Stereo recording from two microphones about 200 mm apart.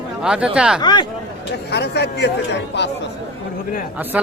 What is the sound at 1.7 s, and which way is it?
Speech, 55° left (ahead or behind).